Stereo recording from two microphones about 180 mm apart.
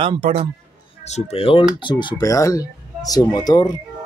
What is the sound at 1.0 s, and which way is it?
Speech, 35° left (ahead or behind).